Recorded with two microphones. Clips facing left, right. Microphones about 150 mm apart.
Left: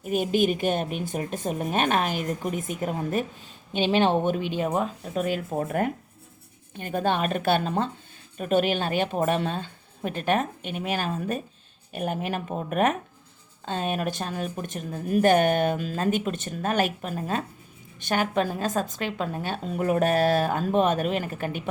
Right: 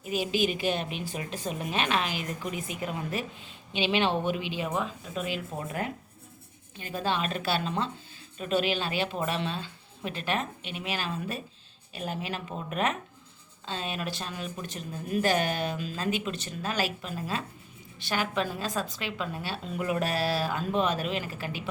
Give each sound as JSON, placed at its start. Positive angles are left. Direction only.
{"t": 0.0, "sound": "speech", "side_deg": 50}